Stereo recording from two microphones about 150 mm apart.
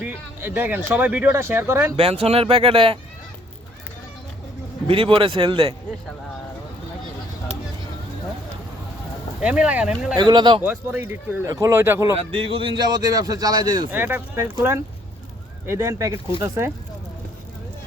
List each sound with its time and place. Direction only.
0.0 s a sound: 10° right (ahead or behind)
0.9 s speech: 10° right (ahead or behind)
2.0 s speech: 45° right (ahead or behind)
4.9 s speech: 40° right (ahead or behind)
9.4 s speech: 10° right (ahead or behind)
10.2 s speech: 30° right (ahead or behind)
10.6 s speech: 10° right (ahead or behind)
12.3 s speech: 35° right (ahead or behind)
13.9 s speech: 15° right (ahead or behind)
15.6 s speech: 20° right (ahead or behind)